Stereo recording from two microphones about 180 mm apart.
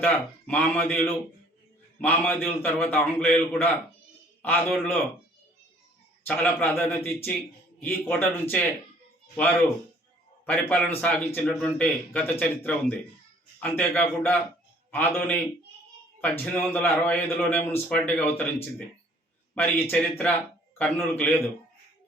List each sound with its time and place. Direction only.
0.0 s a man's voice: 10° left (ahead or behind)
6.2 s a man's voice: 10° left (ahead or behind)
19.5 s a man's voice: 10° left (ahead or behind)